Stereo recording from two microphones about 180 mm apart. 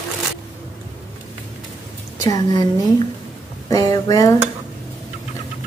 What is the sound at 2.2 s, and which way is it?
Speech, 20° left (ahead or behind).